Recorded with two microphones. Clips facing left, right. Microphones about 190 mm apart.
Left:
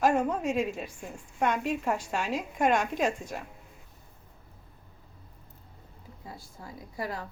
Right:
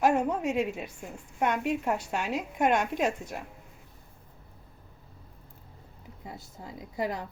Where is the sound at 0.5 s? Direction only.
20° right (ahead or behind).